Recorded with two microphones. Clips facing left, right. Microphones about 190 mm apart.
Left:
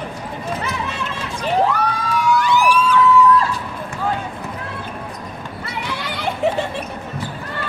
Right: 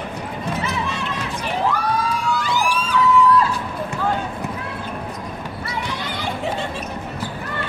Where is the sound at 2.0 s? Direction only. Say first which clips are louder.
Left 4 dB; 65° left (ahead or behind).